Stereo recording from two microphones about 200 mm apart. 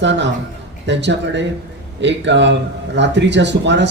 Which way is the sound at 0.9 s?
60° right (ahead or behind).